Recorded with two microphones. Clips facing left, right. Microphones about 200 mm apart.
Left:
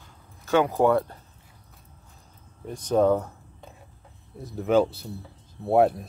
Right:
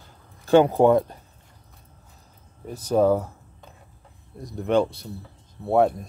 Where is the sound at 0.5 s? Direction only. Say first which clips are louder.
Right 5 dB; 30° right (ahead or behind).